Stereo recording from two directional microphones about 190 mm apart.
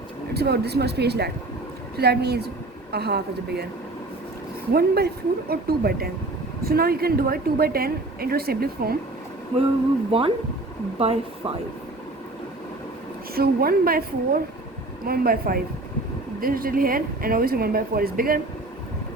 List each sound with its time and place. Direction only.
0.3 s speech: 60° right (ahead or behind)
4.7 s a woman's voice: 55° right (ahead or behind)
10.1 s speech: 30° right (ahead or behind)
13.3 s a woman's voice: 50° right (ahead or behind)
15.0 s a woman's voice: 50° right (ahead or behind)